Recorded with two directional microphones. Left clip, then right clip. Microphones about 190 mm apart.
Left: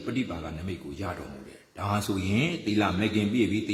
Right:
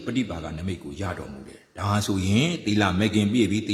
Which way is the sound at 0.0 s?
20° right (ahead or behind).